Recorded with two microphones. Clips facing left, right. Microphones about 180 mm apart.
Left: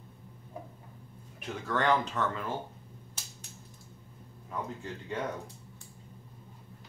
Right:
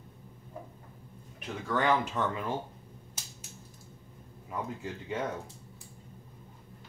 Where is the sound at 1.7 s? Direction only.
5° right (ahead or behind).